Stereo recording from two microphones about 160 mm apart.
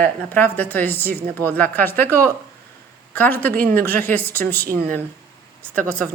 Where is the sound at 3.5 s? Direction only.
60° right (ahead or behind).